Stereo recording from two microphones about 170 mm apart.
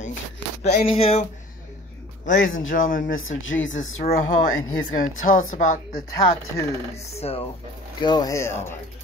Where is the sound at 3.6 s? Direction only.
90° left.